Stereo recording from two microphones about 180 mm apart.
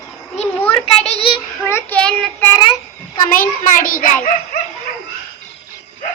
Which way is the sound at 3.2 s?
50° left (ahead or behind).